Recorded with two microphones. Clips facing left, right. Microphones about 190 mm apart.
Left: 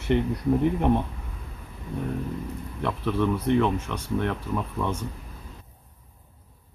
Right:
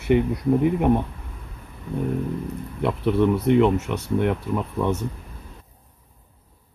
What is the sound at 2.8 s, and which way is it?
Speech, 15° right (ahead or behind).